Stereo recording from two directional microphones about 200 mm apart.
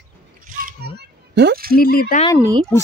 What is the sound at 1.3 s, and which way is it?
Speech, 55° right (ahead or behind).